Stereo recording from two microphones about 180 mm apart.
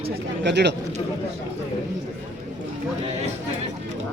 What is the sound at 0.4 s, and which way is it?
Speech, 70° right (ahead or behind).